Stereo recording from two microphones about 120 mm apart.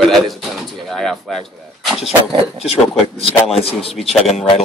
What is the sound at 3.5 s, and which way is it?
Speech, 55° left (ahead or behind).